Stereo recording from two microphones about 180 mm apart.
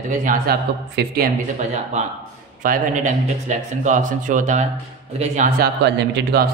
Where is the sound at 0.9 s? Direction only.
60° right (ahead or behind).